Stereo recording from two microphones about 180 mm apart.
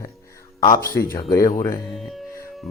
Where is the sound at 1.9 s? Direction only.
Centre (ahead or behind).